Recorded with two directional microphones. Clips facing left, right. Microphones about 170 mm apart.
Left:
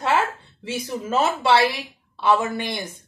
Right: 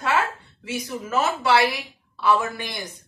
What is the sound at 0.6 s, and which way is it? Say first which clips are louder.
A woman's voice: left 2 dB; 30° left (ahead or behind).